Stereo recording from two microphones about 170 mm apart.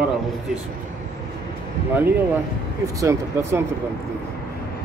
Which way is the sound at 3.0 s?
15° right (ahead or behind).